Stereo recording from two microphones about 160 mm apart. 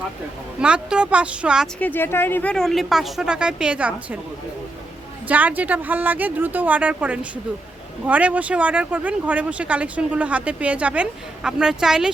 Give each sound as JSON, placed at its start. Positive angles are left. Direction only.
{"t": 0.6, "sound": "speech", "side_deg": -5}
{"t": 1.8, "sound": "speech", "side_deg": 15}
{"t": 5.3, "sound": "speech", "side_deg": -10}